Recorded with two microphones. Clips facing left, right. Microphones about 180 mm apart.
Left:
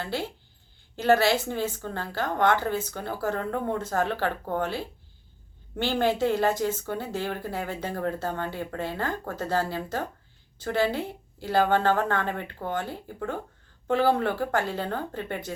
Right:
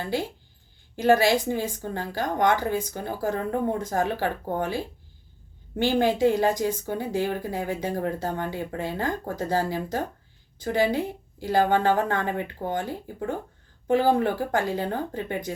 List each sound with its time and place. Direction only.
0.0 s a woman's voice: 15° right (ahead or behind)